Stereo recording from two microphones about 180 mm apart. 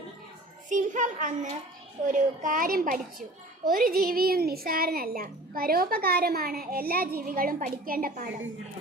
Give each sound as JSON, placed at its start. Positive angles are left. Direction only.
{"t": 0.7, "sound": "a woman's voice", "side_deg": -45}